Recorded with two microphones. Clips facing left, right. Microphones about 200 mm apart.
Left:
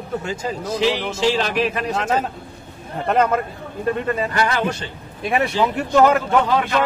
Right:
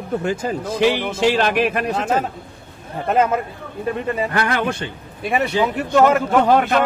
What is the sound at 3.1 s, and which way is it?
Speech, 5° right (ahead or behind).